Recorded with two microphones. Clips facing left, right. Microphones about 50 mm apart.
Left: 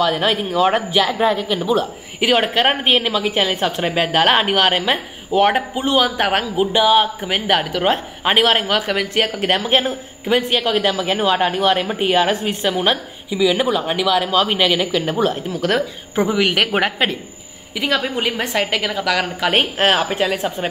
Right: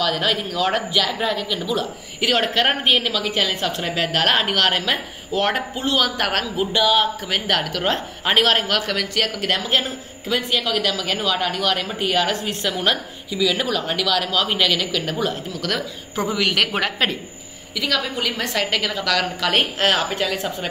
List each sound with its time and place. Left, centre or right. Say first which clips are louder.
0.0 s speech: left 4 dB; left